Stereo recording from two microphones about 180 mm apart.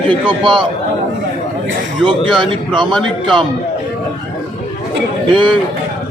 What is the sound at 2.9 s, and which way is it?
Speech, centre (ahead or behind).